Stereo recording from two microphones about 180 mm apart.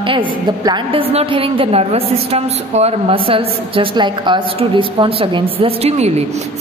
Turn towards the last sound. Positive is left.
turn(degrees=-35)  # may be behind; listen again after turning